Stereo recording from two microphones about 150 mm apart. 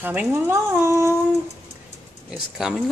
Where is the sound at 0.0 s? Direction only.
10° right (ahead or behind).